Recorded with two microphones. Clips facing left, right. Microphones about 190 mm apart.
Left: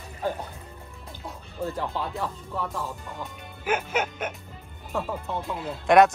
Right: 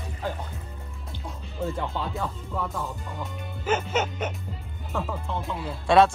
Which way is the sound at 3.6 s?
10° left (ahead or behind).